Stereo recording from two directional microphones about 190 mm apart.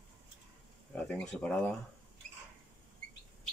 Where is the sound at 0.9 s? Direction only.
5° left (ahead or behind).